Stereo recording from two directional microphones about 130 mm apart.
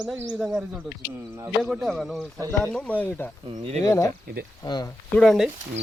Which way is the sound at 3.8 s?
25° left (ahead or behind).